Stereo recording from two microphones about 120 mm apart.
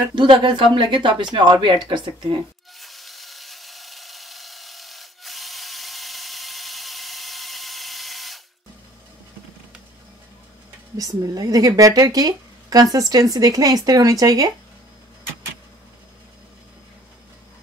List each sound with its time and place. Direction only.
0.1 s a woman's voice: 40° right (ahead or behind)
2.8 s wood: centre (ahead or behind)
11.0 s a woman's voice: 30° right (ahead or behind)